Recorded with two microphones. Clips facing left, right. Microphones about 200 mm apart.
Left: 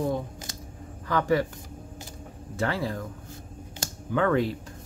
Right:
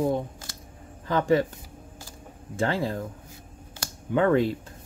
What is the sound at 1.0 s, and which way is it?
Speech, 20° right (ahead or behind).